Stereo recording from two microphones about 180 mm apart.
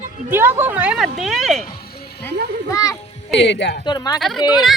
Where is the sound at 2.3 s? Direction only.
60° right (ahead or behind).